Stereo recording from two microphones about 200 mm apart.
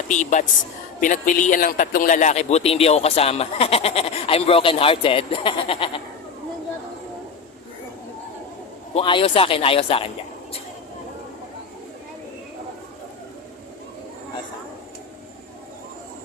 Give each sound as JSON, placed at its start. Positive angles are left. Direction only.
{"t": 0.1, "sound": "a man's voice", "side_deg": 40}
{"t": 9.0, "sound": "speech", "side_deg": 25}